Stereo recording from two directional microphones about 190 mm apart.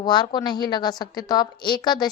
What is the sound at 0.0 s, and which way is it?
A woman's voice, 25° left (ahead or behind).